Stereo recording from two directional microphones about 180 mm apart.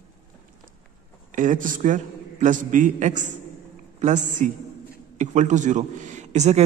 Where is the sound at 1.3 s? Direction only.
45° right (ahead or behind).